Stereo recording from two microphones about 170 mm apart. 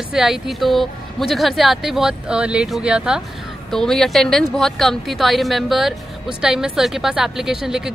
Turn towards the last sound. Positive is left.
turn(degrees=-5)  # may be behind; listen again after turning